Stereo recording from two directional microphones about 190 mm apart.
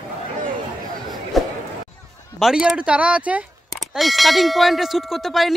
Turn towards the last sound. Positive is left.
turn(degrees=0)  # may be behind; listen again after turning